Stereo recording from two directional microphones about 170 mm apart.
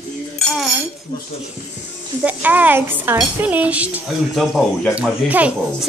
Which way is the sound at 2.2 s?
10° right (ahead or behind).